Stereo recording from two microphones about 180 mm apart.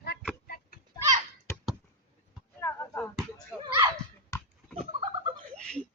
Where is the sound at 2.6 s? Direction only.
15° left (ahead or behind).